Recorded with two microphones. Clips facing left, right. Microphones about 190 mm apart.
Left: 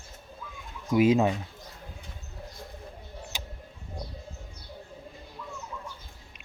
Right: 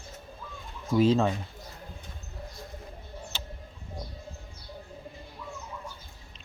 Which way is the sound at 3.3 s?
15° left (ahead or behind).